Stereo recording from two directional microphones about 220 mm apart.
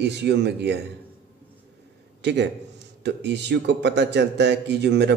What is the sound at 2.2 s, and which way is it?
Speech, 50° right (ahead or behind).